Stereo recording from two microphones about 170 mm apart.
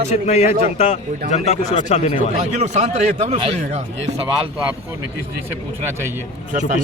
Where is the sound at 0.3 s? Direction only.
40° left (ahead or behind).